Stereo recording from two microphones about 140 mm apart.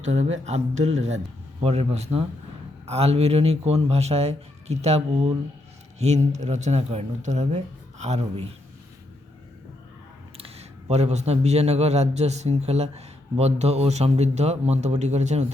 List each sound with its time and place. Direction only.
0.0 s a man's voice: 55° right (ahead or behind)
10.3 s a man's voice: 45° right (ahead or behind)